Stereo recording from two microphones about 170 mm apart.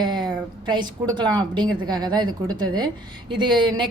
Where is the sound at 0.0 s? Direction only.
25° right (ahead or behind).